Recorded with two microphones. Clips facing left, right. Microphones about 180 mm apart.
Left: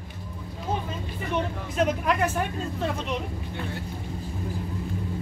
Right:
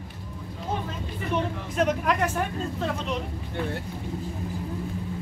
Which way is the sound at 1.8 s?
Centre (ahead or behind).